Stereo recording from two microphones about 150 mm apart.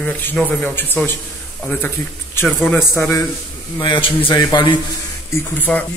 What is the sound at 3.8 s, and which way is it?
A man's voice, 35° left (ahead or behind).